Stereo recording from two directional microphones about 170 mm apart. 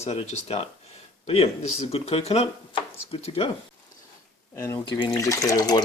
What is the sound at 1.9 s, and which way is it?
Speech, 35° left (ahead or behind).